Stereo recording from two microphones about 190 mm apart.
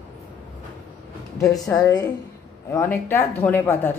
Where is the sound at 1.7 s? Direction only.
20° left (ahead or behind).